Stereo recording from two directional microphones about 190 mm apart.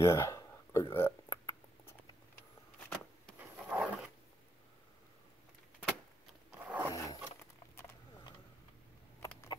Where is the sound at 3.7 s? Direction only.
5° right (ahead or behind).